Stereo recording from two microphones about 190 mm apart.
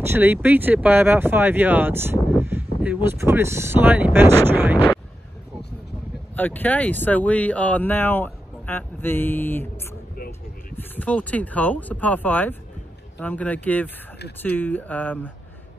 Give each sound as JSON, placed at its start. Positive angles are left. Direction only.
{"t": 0.0, "sound": "speech", "side_deg": -10}
{"t": 6.3, "sound": "speech", "side_deg": 10}
{"t": 10.1, "sound": "music", "side_deg": 50}
{"t": 10.8, "sound": "speech", "side_deg": 10}